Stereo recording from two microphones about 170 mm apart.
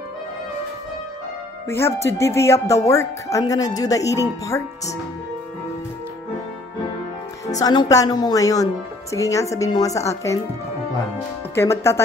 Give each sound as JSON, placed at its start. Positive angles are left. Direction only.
{"t": 1.7, "sound": "speech", "side_deg": 15}
{"t": 7.4, "sound": "speech", "side_deg": 20}
{"t": 11.5, "sound": "speech", "side_deg": 15}